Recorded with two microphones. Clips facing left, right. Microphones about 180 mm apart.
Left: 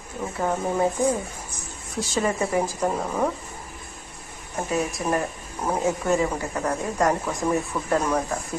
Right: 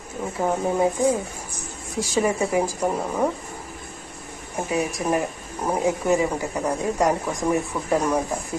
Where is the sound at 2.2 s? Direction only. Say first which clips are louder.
Right 2 dB; 10° right (ahead or behind).